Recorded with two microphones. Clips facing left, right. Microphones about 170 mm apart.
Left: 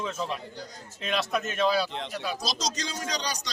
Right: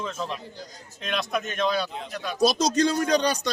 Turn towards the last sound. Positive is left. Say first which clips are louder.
# right 10 dB
turn(degrees=-55)  # may be behind; listen again after turning